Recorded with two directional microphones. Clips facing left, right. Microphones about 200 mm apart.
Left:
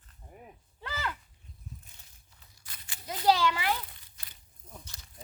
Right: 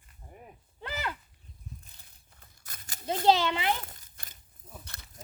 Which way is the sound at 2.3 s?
45° right (ahead or behind).